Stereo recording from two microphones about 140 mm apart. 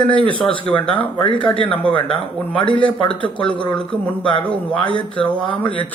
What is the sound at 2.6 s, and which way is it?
Speech, 35° left (ahead or behind).